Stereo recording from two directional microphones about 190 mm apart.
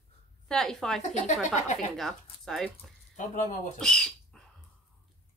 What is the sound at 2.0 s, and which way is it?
Speech, centre (ahead or behind).